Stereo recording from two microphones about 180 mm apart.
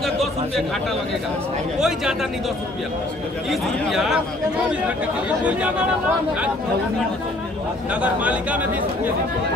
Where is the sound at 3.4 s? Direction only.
Centre (ahead or behind).